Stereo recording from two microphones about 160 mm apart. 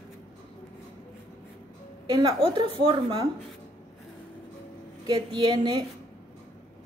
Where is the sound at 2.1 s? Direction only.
25° right (ahead or behind).